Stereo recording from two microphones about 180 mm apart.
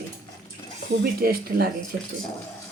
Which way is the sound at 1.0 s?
55° right (ahead or behind).